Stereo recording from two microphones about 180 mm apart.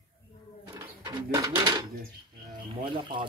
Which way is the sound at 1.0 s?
20° right (ahead or behind).